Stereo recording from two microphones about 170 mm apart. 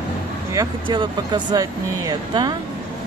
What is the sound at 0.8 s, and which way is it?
Speech, 25° right (ahead or behind).